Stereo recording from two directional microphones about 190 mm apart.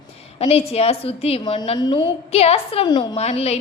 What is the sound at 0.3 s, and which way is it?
A woman's voice, 30° left (ahead or behind).